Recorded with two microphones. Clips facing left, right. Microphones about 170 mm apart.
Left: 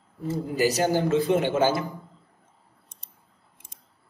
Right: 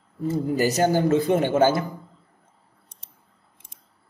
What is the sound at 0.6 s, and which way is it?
A man's voice, 50° right (ahead or behind).